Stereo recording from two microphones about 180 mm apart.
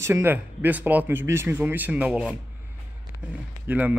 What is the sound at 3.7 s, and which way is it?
Speech, 10° right (ahead or behind).